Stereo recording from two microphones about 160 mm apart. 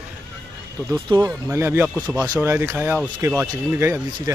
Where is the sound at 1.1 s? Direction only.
20° right (ahead or behind).